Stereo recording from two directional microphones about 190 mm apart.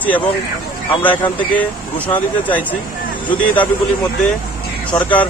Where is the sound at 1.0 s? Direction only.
10° left (ahead or behind).